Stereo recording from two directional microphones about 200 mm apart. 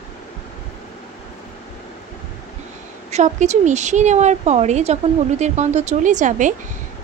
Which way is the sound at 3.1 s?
35° right (ahead or behind).